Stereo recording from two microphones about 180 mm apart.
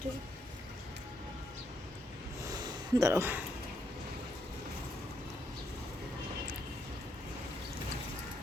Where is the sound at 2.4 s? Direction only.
20° right (ahead or behind).